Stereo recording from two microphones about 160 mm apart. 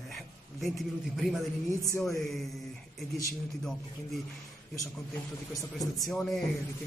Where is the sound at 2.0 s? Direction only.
Centre (ahead or behind).